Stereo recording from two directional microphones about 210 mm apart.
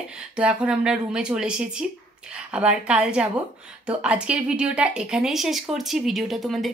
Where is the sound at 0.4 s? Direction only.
5° right (ahead or behind).